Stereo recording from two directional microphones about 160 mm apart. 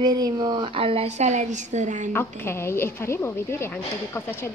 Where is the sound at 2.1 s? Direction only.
15° left (ahead or behind).